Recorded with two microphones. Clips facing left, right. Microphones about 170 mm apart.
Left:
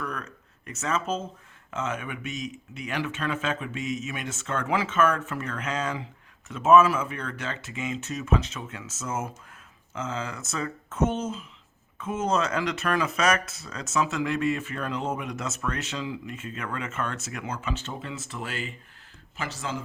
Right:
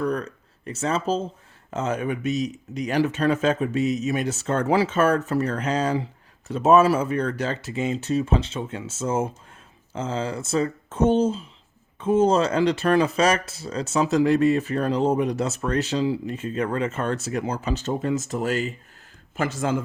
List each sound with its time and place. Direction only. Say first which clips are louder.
0.0 s speech: right 10 dB; 35° right (ahead or behind); by 19.8 s 50° right (ahead or behind)